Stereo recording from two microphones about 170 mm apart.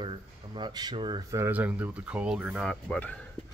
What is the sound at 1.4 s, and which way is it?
Speech, 10° right (ahead or behind).